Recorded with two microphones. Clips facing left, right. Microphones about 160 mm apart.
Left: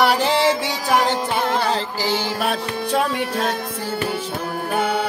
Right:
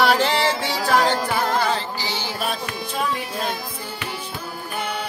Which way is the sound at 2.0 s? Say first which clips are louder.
Left 5 dB; 65° left (ahead or behind).